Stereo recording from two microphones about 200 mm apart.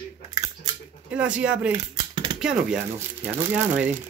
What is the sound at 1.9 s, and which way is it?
Dishes, 25° right (ahead or behind).